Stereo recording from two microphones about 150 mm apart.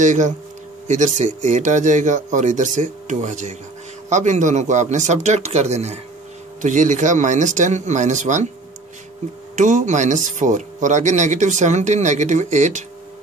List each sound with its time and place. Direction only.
0.0 s speech: 55° right (ahead or behind)
9.6 s speech: 55° right (ahead or behind)